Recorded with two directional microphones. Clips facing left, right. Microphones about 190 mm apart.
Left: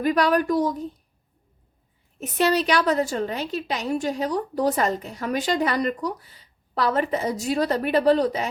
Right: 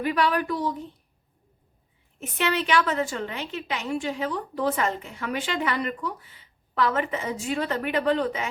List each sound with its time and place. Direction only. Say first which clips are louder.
0.0 s a woman's voice: left 4 dB; 40° left (ahead or behind)
2.1 s a woman's voice: left 5 dB; 40° left (ahead or behind)